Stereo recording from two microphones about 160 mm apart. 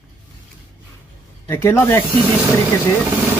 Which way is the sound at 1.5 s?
15° left (ahead or behind).